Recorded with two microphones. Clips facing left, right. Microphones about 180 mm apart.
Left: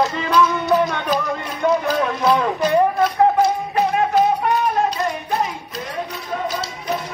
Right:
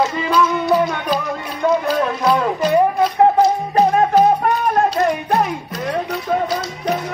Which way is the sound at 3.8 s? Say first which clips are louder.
Right 4 dB; 40° right (ahead or behind).